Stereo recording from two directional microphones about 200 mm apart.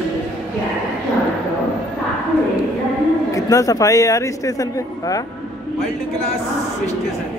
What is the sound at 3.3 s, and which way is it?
Speech, 15° left (ahead or behind).